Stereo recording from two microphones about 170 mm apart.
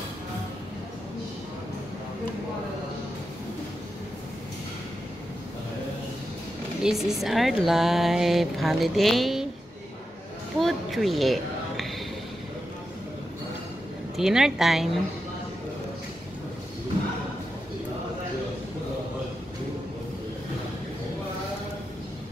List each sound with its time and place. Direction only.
6.8 s speech: 5° right (ahead or behind)
10.6 s a sound: centre (ahead or behind)
14.1 s speech: 5° right (ahead or behind)